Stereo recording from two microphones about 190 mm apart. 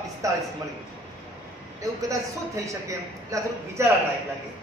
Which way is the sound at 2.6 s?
15° right (ahead or behind).